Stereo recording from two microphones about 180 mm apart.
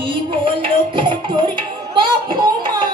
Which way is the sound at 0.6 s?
25° right (ahead or behind).